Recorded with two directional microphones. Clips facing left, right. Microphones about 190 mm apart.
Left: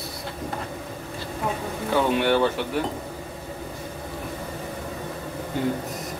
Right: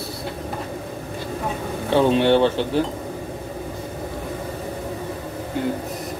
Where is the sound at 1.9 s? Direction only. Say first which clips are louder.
Right 5 dB; 25° right (ahead or behind).